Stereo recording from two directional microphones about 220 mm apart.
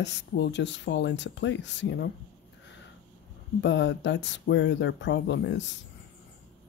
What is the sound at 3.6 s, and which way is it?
Speech, 55° left (ahead or behind).